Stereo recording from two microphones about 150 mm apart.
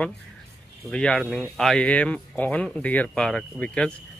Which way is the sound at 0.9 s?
5° left (ahead or behind).